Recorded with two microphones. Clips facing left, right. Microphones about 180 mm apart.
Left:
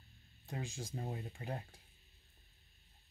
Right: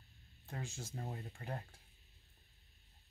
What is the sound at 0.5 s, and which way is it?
Speech, 15° left (ahead or behind).